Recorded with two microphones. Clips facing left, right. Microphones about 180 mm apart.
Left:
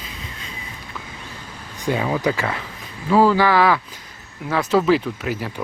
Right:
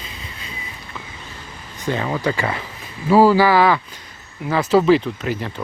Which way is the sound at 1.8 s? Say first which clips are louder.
Left 1 dB; 10° left (ahead or behind).